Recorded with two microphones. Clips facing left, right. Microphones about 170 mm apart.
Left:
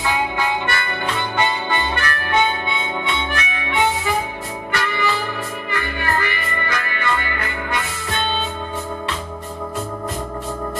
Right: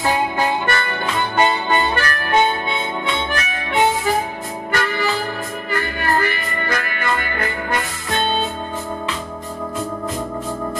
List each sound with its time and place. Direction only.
0.0 s music: 40° right (ahead or behind)